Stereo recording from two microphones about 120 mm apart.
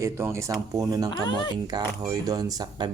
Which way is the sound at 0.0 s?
25° right (ahead or behind).